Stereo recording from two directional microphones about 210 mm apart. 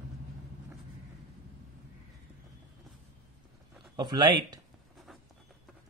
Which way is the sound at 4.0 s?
20° right (ahead or behind).